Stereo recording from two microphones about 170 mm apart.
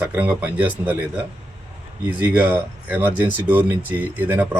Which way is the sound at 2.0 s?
10° right (ahead or behind).